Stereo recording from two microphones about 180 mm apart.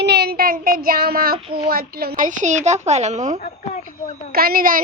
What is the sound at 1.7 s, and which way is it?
A woman's voice, 55° right (ahead or behind).